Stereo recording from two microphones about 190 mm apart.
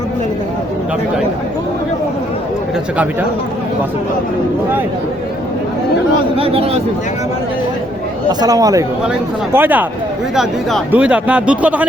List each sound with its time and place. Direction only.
6.3 s speech: 30° right (ahead or behind)
8.3 s a man's voice: 20° right (ahead or behind)
10.3 s a man's voice: centre (ahead or behind)